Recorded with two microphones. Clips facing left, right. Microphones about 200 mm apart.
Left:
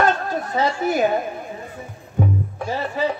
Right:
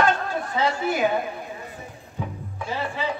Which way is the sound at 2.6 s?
40° left (ahead or behind).